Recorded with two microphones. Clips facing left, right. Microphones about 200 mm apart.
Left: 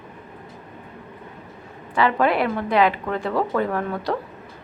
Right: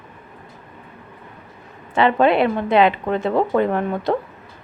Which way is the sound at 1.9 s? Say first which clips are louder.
Right 4 dB; 25° right (ahead or behind).